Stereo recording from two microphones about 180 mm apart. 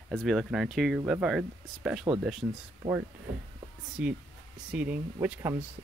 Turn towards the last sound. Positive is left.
turn(degrees=-15)  # may be behind; listen again after turning